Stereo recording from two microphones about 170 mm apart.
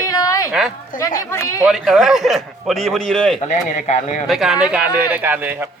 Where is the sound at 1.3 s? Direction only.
15° left (ahead or behind).